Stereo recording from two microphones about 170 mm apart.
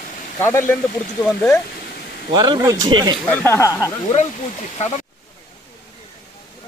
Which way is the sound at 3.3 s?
15° left (ahead or behind).